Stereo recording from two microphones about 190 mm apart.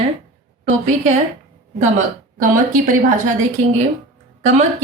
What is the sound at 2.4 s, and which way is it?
Speech, 45° right (ahead or behind).